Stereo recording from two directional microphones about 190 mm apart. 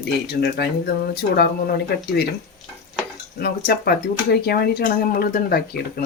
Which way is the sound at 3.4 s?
55° left (ahead or behind).